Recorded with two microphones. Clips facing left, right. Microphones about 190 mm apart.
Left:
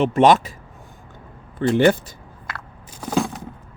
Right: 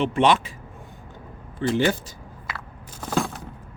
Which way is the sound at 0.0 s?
40° left (ahead or behind).